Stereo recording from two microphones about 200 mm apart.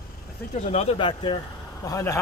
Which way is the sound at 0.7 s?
30° left (ahead or behind).